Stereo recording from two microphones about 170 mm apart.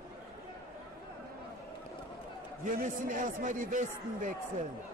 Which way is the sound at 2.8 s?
50° right (ahead or behind).